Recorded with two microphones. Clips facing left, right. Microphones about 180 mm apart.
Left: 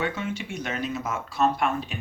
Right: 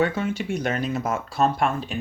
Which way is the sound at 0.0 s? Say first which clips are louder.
Right 6 dB; 40° right (ahead or behind).